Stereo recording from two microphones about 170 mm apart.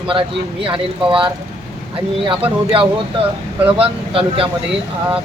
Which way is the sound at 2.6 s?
30° right (ahead or behind).